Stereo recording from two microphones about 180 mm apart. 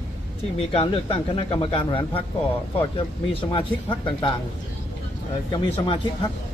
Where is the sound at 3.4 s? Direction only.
25° left (ahead or behind).